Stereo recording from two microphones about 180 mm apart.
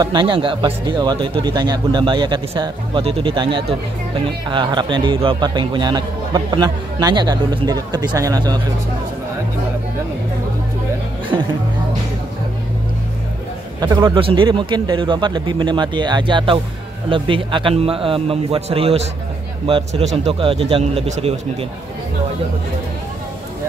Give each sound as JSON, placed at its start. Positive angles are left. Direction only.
{"t": 0.0, "sound": "a man's voice", "side_deg": -25}
{"t": 13.7, "sound": "a man's voice", "side_deg": -20}